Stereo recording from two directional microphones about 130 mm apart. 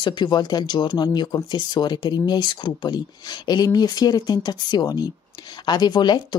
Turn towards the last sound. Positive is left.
turn(degrees=35)  # may be behind; listen again after turning